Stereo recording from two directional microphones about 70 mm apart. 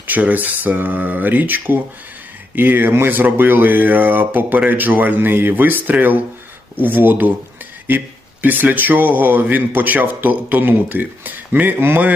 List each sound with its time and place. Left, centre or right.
0.1 s speech: right